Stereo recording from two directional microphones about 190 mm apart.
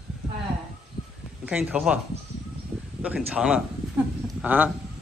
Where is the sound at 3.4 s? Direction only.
5° right (ahead or behind).